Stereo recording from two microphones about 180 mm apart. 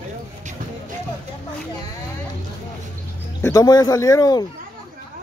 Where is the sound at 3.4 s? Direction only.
20° left (ahead or behind).